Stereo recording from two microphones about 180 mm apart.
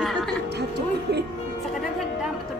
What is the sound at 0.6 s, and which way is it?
Speech, 65° right (ahead or behind).